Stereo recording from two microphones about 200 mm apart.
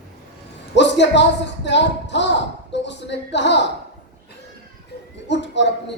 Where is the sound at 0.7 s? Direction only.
60° left (ahead or behind).